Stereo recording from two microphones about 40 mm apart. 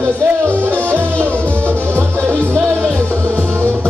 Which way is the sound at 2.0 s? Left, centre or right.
Right.